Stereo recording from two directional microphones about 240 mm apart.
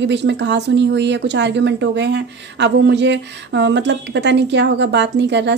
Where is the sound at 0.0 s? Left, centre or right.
Right.